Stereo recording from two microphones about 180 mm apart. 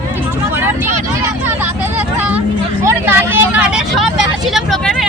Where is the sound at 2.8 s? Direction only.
10° right (ahead or behind).